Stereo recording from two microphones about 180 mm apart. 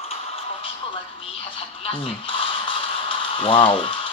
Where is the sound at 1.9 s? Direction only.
30° left (ahead or behind).